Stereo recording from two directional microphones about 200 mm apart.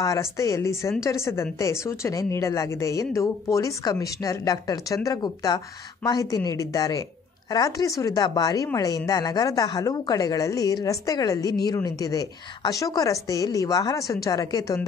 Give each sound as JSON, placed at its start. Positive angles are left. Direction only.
{"t": 0.0, "sound": "a woman's voice", "side_deg": 15}